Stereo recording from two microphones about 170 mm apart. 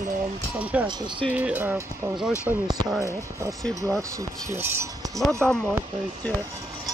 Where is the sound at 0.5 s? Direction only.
10° right (ahead or behind).